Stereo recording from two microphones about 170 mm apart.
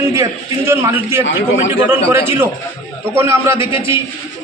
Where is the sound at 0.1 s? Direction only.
15° right (ahead or behind).